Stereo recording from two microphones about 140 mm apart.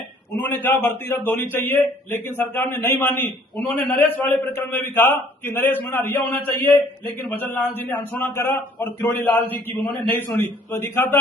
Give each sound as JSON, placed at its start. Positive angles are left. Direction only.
{"t": 0.3, "sound": "a man's voice", "side_deg": 15}
{"t": 7.3, "sound": "a man's voice", "side_deg": 15}